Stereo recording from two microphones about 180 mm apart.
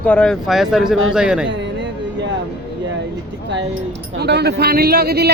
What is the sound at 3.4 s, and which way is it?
Speech, 80° right.